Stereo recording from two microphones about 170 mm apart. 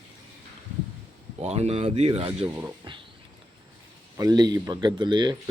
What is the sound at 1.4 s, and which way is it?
Speech, 40° right (ahead or behind).